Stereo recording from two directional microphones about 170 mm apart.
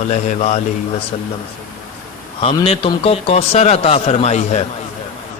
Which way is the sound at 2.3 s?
35° left (ahead or behind).